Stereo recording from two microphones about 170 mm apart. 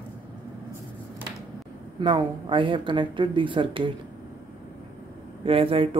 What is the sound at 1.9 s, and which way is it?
Speech, 25° right (ahead or behind).